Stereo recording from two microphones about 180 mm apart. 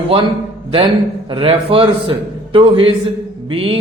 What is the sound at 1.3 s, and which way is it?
A man's voice, 30° right (ahead or behind).